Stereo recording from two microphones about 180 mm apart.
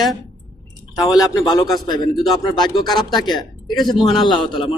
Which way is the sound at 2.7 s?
25° left (ahead or behind).